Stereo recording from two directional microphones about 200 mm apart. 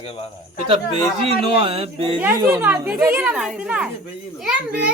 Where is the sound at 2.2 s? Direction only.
15° right (ahead or behind).